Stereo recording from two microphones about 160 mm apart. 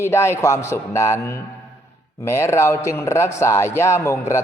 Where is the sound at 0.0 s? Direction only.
15° left (ahead or behind).